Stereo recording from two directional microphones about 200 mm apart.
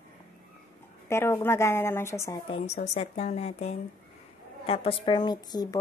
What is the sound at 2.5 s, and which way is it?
A woman's voice, 35° left (ahead or behind).